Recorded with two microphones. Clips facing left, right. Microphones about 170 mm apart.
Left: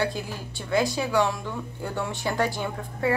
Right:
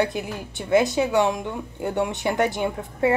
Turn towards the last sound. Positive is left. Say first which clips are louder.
# right 4 dB
turn(degrees=-20)  # may be behind; listen again after turning